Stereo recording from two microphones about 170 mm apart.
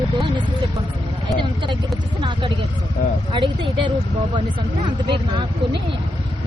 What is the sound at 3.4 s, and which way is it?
Speech, 30° right (ahead or behind).